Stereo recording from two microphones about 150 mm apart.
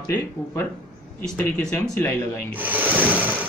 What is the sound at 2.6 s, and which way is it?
Speech, 10° right (ahead or behind).